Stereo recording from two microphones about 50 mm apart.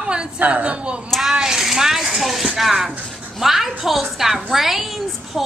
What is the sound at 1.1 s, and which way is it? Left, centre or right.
A woman's voice, centre.